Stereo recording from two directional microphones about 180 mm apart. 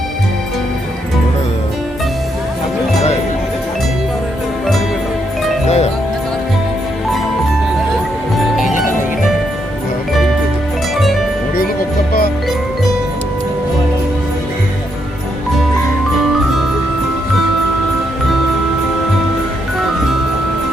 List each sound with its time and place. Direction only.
5.6 s music: 35° left (ahead or behind)